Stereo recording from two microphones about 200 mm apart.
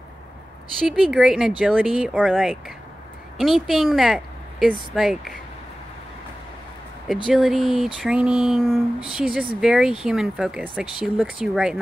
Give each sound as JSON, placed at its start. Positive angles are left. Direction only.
{"t": 0.8, "sound": "speech", "side_deg": 0}
{"t": 7.2, "sound": "speech", "side_deg": 0}